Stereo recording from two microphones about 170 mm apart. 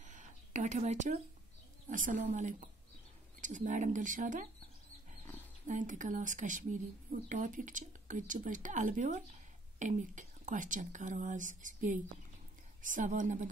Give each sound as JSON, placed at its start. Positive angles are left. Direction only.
{"t": 0.0, "sound": "a sound", "side_deg": -45}
{"t": 1.9, "sound": "a woman's voice", "side_deg": -50}
{"t": 5.7, "sound": "a woman's voice", "side_deg": -50}